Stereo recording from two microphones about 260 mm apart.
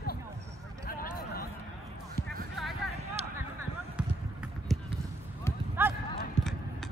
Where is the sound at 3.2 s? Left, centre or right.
Right.